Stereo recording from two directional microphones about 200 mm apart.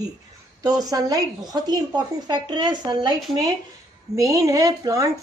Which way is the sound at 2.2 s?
20° right (ahead or behind).